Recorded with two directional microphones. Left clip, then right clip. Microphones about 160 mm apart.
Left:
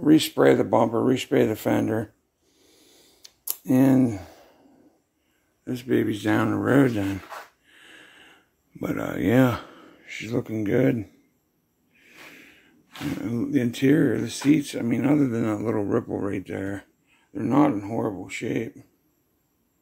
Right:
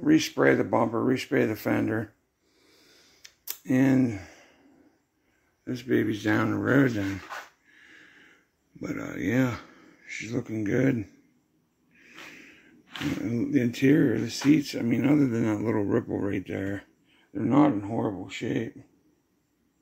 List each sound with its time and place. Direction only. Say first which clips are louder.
0.0 s speech: left 4 dB; 30° left (ahead or behind)
2.7 s a sound: left 1 dB; 15° left (ahead or behind)
3.6 s speech: left 4 dB; 25° left (ahead or behind)
5.7 s speech: left 2 dB; 10° left (ahead or behind)
7.6 s a sound: left 4 dB; 35° left (ahead or behind); by 11.1 s 10° left (ahead or behind)
12.0 s snort: even; 15° left (ahead or behind)
13.2 s speech: left 2 dB; 10° left (ahead or behind); by 18.7 s 5° right (ahead or behind)